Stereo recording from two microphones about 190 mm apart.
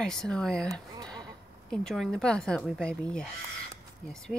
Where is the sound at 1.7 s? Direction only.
Centre (ahead or behind).